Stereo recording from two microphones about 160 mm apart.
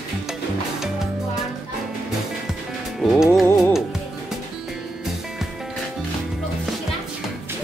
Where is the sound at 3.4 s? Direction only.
15° left (ahead or behind).